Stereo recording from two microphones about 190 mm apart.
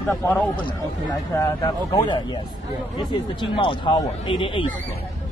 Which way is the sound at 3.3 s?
25° left (ahead or behind).